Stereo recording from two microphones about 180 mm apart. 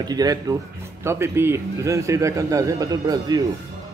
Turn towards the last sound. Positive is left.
turn(degrees=-20)  # may be behind; listen again after turning